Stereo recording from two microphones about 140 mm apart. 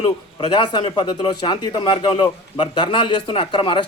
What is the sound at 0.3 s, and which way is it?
A man's voice, 35° left (ahead or behind).